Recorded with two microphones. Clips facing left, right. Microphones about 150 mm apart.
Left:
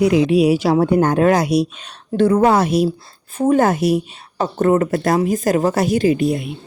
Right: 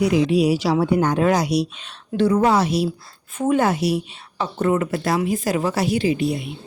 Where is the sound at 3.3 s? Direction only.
35° left (ahead or behind).